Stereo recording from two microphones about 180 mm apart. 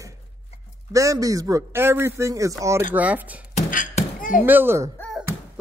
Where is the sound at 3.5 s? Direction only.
50° left (ahead or behind).